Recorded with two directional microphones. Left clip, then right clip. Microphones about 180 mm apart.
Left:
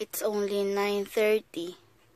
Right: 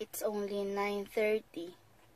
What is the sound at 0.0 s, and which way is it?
A woman's voice, 60° left (ahead or behind).